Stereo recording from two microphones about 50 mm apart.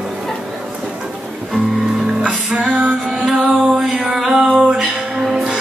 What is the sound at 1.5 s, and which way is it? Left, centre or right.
Music, centre.